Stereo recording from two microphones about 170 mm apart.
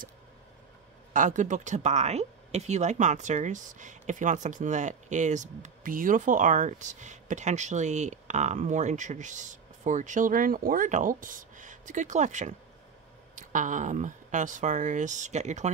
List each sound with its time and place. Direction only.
1.1 s speech: 50° right (ahead or behind)